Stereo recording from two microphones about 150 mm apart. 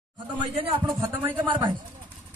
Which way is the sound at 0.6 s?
40° right (ahead or behind).